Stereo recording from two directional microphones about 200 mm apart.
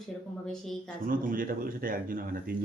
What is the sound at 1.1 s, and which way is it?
Speech, 45° right (ahead or behind).